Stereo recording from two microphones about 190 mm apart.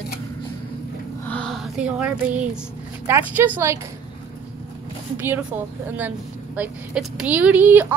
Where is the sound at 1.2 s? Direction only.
5° left (ahead or behind).